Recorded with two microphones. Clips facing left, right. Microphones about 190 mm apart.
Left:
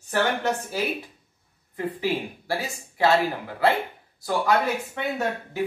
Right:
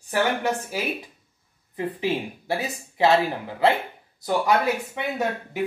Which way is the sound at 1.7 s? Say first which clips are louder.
Right 1 dB; 20° right (ahead or behind).